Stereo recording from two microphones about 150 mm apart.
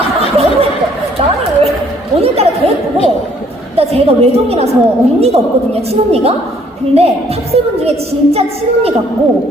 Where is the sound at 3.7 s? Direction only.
40° right (ahead or behind).